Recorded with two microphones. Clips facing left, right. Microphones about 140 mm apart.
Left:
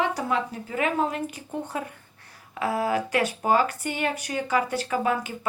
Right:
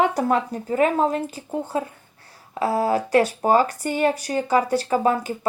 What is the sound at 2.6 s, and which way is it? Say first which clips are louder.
A woman's voice: right 4 dB; 35° right (ahead or behind).